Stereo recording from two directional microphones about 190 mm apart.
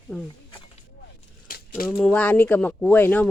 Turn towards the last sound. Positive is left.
turn(degrees=10)  # may be behind; listen again after turning